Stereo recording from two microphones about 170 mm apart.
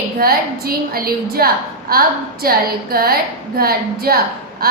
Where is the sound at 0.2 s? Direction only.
60° right (ahead or behind).